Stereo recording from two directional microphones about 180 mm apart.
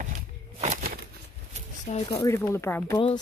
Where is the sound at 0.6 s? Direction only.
40° right (ahead or behind).